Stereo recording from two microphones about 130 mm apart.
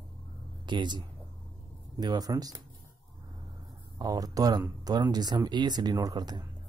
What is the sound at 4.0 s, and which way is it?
Speech, 30° right (ahead or behind).